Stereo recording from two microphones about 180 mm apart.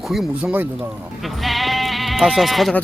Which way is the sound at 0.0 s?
Centre (ahead or behind).